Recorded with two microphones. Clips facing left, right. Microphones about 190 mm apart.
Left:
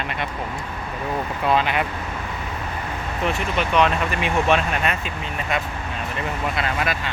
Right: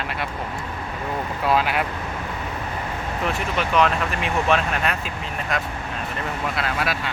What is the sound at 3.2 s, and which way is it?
Speech, centre (ahead or behind).